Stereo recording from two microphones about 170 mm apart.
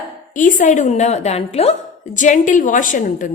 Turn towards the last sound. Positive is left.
turn(degrees=50)  # may be behind; listen again after turning